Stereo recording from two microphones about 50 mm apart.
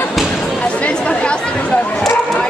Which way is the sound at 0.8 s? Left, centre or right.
Left.